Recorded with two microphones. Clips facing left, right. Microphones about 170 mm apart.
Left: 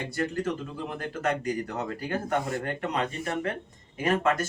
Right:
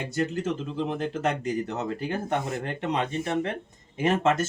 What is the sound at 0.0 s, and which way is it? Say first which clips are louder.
Speech: right 1 dB; 20° right (ahead or behind).